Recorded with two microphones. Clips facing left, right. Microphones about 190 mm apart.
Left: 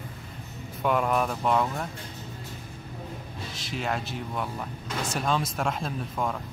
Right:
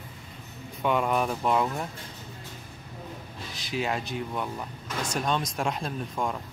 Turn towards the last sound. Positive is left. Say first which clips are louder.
# even
turn(degrees=0)  # may be behind; listen again after turning